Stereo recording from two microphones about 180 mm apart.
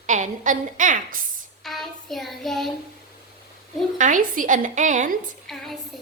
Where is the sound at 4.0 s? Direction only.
45° right (ahead or behind).